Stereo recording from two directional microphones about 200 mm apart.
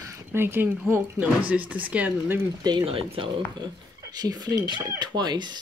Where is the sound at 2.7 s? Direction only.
25° right (ahead or behind).